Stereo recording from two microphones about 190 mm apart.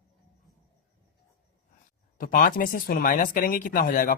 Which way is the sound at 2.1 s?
45° left (ahead or behind).